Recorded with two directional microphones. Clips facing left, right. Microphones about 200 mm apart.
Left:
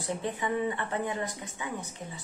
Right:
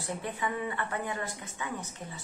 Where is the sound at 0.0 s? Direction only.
20° left (ahead or behind).